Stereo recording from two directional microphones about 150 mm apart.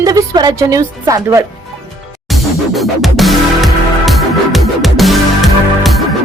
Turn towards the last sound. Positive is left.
turn(degrees=0)  # may be behind; listen again after turning